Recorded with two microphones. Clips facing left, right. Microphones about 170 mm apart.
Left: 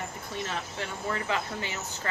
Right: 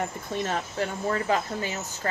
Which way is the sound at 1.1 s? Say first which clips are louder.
Right 4 dB; 40° right (ahead or behind).